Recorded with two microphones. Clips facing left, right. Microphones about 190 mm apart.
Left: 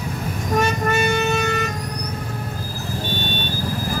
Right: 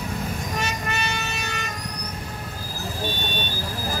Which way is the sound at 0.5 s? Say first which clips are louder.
Left 12 dB; 50° left (ahead or behind).